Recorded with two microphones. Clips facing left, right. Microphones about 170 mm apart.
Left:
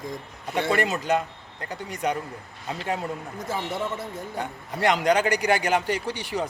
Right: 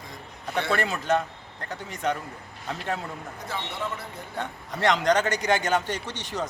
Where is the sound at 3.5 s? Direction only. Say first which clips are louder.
Left 4 dB; 45° left (ahead or behind).